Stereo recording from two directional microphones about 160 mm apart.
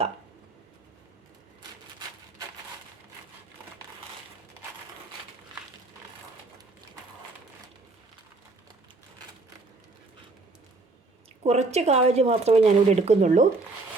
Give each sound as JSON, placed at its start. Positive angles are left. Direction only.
{"t": 11.4, "sound": "speech", "side_deg": -45}